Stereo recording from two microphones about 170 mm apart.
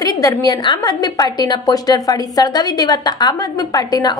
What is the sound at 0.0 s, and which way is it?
A woman's voice, 20° left (ahead or behind).